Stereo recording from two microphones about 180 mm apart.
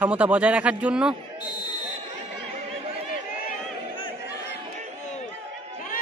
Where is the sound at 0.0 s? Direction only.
10° right (ahead or behind).